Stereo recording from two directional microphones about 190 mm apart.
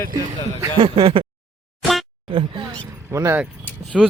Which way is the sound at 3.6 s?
5° left (ahead or behind).